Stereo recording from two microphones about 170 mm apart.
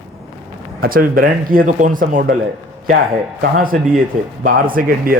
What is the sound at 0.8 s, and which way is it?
Speech, 55° right (ahead or behind).